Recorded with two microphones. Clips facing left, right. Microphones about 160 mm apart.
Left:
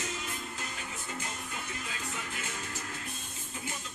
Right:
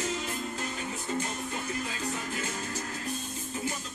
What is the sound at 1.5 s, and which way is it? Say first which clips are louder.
Music: right 6 dB; 35° right (ahead or behind).